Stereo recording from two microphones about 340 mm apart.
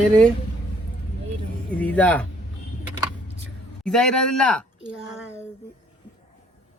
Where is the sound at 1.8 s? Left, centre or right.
Centre.